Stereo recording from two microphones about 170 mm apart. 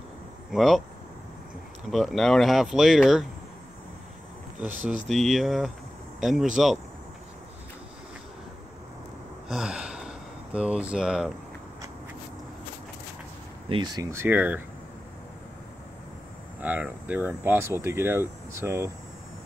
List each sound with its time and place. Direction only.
0.5 s speech: centre (ahead or behind)
1.9 s speech: centre (ahead or behind)
4.6 s speech: 10° right (ahead or behind)
9.5 s speech: 5° right (ahead or behind)
13.7 s speech: 30° right (ahead or behind)
14.1 s speech: 10° right (ahead or behind)
16.6 s speech: 10° right (ahead or behind)